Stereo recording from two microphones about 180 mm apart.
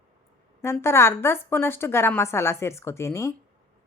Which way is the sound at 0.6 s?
15° left (ahead or behind).